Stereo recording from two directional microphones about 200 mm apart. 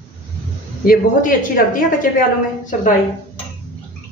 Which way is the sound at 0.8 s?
45° left (ahead or behind).